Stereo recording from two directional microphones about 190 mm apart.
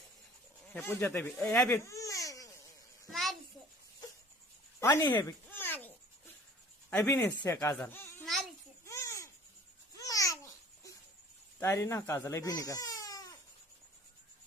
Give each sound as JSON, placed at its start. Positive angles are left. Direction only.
{"t": 0.7, "sound": "speech", "side_deg": 15}
{"t": 3.1, "sound": "a sound", "side_deg": 0}
{"t": 4.8, "sound": "a sound", "side_deg": 15}
{"t": 6.9, "sound": "speech", "side_deg": 15}
{"t": 8.8, "sound": "babbling", "side_deg": 15}
{"t": 11.6, "sound": "speech", "side_deg": 15}